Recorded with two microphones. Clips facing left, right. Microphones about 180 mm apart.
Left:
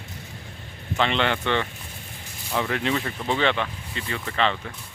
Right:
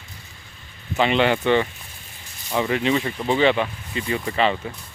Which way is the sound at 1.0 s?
5° right (ahead or behind).